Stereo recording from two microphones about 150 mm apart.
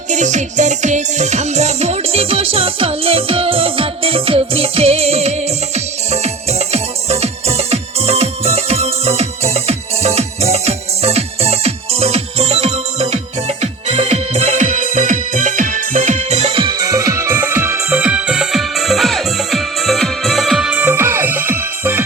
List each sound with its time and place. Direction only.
0.1 s music: 55° right (ahead or behind); by 22.0 s 15° right (ahead or behind)